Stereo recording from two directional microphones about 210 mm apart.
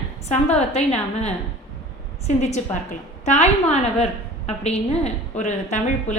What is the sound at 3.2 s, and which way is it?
A woman's voice, 35° left (ahead or behind).